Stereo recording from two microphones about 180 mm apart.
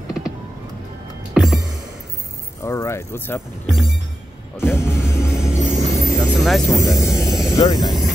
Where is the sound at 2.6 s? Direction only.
15° left (ahead or behind).